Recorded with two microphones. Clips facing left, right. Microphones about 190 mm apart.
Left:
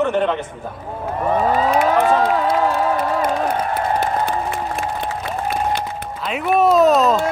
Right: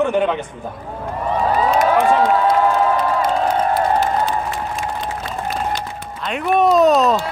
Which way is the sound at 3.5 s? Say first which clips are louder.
Right 3 dB; 55° left (ahead or behind).